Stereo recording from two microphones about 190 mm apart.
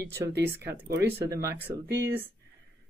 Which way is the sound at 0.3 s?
60° right (ahead or behind).